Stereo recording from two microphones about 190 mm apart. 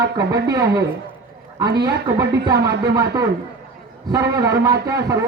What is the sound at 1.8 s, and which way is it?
Speech, 15° right (ahead or behind).